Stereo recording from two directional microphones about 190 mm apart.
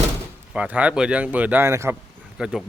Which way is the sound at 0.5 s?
5° right (ahead or behind).